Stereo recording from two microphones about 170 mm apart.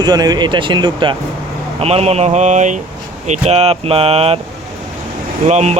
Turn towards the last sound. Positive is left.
turn(degrees=-40)  # may be behind; listen again after turning